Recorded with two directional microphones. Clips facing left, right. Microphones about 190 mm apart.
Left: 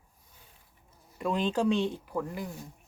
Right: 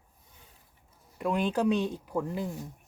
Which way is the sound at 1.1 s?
15° right (ahead or behind).